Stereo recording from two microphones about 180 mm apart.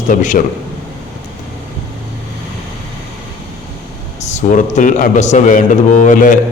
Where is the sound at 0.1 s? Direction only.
45° left (ahead or behind).